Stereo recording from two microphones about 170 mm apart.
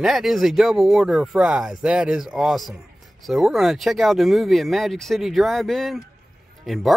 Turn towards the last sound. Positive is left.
turn(degrees=0)  # may be behind; listen again after turning